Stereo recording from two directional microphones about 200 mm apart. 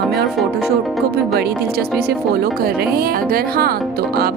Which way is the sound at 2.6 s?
50° right (ahead or behind).